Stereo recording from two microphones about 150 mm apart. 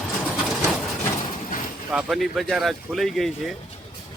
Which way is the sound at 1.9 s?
5° right (ahead or behind).